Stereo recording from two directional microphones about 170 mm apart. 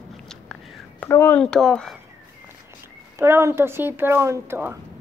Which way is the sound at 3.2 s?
15° right (ahead or behind).